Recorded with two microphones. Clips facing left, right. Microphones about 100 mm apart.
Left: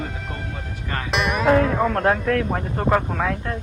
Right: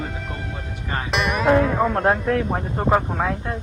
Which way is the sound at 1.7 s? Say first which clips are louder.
Even; 10° right (ahead or behind).